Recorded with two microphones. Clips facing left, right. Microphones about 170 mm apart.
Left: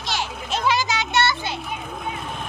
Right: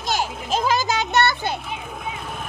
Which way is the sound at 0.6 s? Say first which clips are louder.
Left 1 dB; 45° right (ahead or behind).